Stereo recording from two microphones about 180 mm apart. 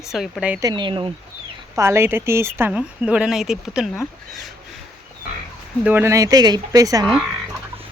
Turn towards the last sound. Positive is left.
turn(degrees=5)  # may be behind; listen again after turning